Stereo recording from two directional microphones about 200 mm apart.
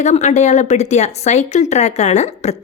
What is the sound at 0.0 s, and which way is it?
A woman's voice, 35° left (ahead or behind).